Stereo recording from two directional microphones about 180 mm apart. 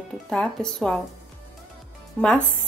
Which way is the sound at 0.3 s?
5° left (ahead or behind).